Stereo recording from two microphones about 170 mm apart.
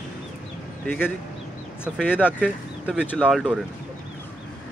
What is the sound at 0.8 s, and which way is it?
Speech, 10° left (ahead or behind).